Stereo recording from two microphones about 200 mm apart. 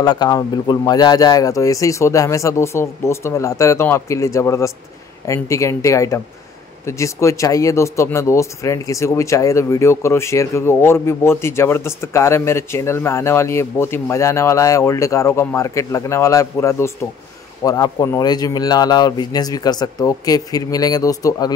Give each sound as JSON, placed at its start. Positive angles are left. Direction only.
{"t": 0.0, "sound": "speech", "side_deg": 20}